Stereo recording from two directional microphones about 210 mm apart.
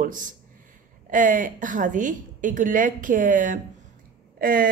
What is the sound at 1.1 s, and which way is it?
A woman's voice, 40° right (ahead or behind).